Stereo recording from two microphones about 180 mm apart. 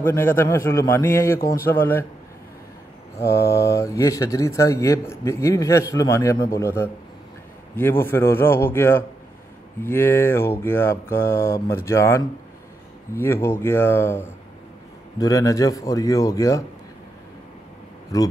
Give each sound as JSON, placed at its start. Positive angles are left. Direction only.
{"t": 0.0, "sound": "a man's voice", "side_deg": 15}
{"t": 3.3, "sound": "mantra", "side_deg": 65}
{"t": 3.6, "sound": "a man's voice", "side_deg": 15}
{"t": 8.0, "sound": "a man's voice", "side_deg": 10}